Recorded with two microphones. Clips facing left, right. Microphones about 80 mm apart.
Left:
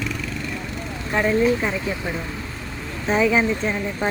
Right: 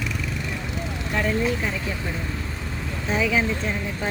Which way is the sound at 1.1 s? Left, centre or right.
Left.